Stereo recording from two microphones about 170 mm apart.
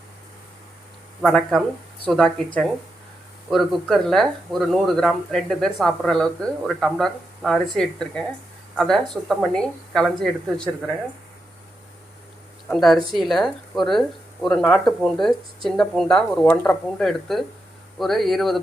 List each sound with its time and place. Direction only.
1.2 s speech: 5° left (ahead or behind)
3.5 s speech: centre (ahead or behind)
12.7 s speech: centre (ahead or behind)